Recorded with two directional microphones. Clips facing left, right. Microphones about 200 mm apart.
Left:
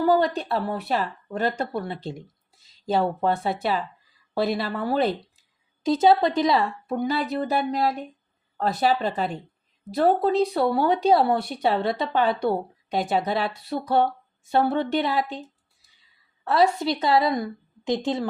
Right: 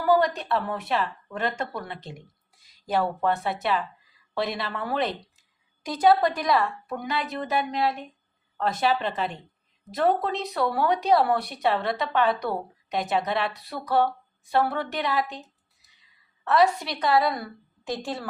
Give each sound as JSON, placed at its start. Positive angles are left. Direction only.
{"t": 0.0, "sound": "speech", "side_deg": 25}